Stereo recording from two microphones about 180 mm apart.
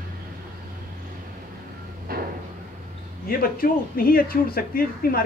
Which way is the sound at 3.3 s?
55° left (ahead or behind).